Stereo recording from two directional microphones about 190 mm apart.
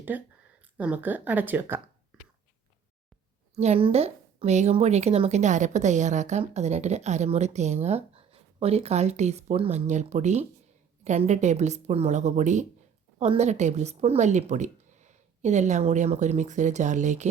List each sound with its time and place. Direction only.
0.1 s speech: 10° right (ahead or behind)
3.5 s a woman's voice: 35° right (ahead or behind)